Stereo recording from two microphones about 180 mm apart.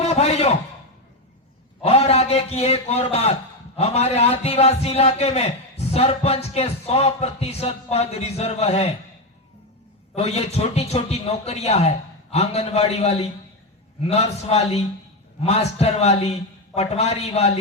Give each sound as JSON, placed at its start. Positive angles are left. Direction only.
{"t": 0.0, "sound": "a sound", "side_deg": 35}
{"t": 1.8, "sound": "a man's voice", "side_deg": 35}
{"t": 10.2, "sound": "a man's voice", "side_deg": 35}